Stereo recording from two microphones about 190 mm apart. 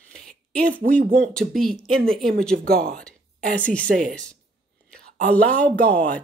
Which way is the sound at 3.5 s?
5° left (ahead or behind).